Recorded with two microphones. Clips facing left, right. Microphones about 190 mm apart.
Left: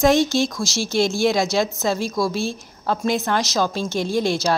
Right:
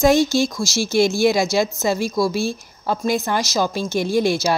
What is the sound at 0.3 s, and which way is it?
A woman's voice, 5° right (ahead or behind).